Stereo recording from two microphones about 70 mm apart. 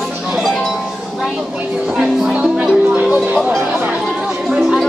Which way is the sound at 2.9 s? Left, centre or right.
Right.